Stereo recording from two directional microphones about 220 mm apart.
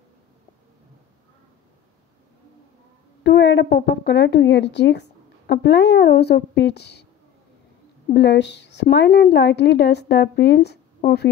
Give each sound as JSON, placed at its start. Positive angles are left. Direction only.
{"t": 3.3, "sound": "speech", "side_deg": 50}
{"t": 8.1, "sound": "a woman's voice", "side_deg": 50}